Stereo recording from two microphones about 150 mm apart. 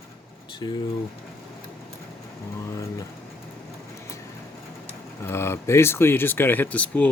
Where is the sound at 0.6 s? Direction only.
35° left (ahead or behind).